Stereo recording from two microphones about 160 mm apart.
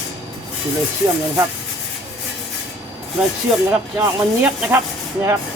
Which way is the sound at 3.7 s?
10° right (ahead or behind).